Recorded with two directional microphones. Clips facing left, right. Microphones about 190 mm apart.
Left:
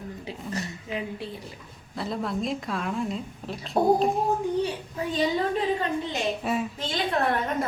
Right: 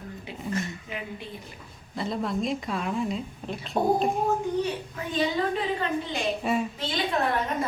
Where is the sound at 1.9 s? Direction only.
Centre (ahead or behind).